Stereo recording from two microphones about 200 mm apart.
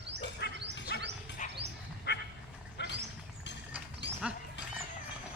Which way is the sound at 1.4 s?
40° left (ahead or behind).